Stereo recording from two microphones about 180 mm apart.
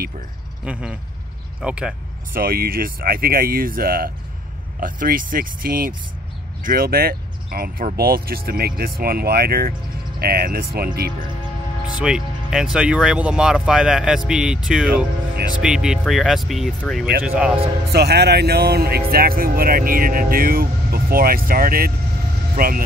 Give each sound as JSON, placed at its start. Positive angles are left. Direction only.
{"t": 0.7, "sound": "speech", "side_deg": -5}
{"t": 2.3, "sound": "speech", "side_deg": -55}
{"t": 12.0, "sound": "a man's voice", "side_deg": -5}
{"t": 17.9, "sound": "speech", "side_deg": -65}